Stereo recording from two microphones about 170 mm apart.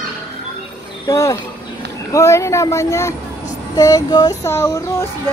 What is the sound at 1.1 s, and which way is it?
Child singing, 20° left (ahead or behind).